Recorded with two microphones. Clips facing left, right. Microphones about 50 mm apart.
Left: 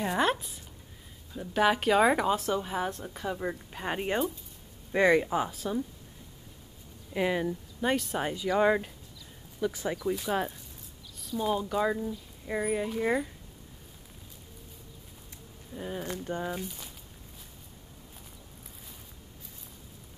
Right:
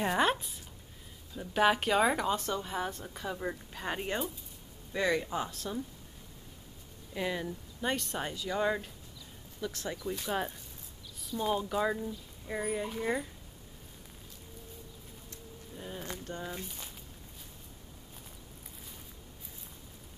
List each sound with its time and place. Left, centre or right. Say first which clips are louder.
0.0 s a woman's voice: left 1 dB; centre
7.2 s a woman's voice: left 6 dB; centre
8.3 s a woman's voice: left 7 dB; centre
9.6 s speech: left 6 dB; centre
10.1 s speech: left 4 dB; centre
12.4 s a woman's voice: left 4 dB; centre
15.7 s a woman's voice: left 6 dB; centre
16.6 s speech: left 4 dB; centre